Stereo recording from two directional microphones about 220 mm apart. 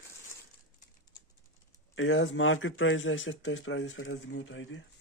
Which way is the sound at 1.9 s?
60° left (ahead or behind).